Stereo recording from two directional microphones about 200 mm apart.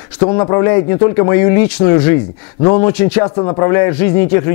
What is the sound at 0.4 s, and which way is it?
A man's voice, 15° left (ahead or behind).